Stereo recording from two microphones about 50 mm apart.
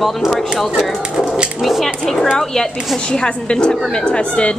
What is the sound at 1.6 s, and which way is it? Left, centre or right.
Speech, centre.